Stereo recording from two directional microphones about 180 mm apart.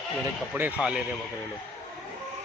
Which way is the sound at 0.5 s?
10° right (ahead or behind).